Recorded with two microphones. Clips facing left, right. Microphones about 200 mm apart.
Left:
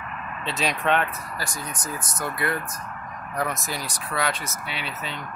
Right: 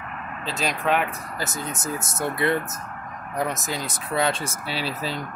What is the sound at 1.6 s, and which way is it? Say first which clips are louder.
Speech: right 4 dB; 25° right (ahead or behind).